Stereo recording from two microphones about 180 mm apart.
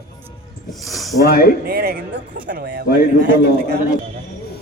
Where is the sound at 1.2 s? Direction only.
60° left (ahead or behind).